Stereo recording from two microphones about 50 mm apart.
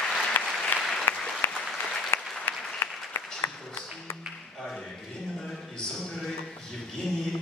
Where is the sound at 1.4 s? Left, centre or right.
Left.